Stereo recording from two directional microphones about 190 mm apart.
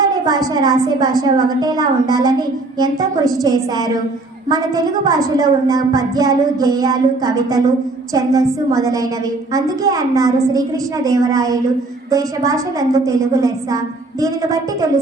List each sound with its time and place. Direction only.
0.0 s a woman's voice: 20° right (ahead or behind)
3.4 s a woman's voice: 20° right (ahead or behind)